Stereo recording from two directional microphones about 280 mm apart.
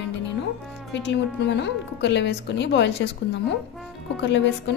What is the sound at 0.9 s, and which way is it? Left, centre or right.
A woman's voice, left.